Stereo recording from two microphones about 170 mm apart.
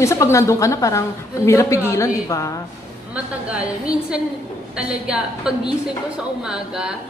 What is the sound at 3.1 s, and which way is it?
A woman's voice, 5° right (ahead or behind).